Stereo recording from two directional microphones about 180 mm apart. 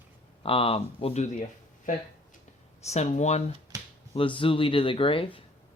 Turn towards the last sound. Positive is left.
turn(degrees=30)  # may be behind; listen again after turning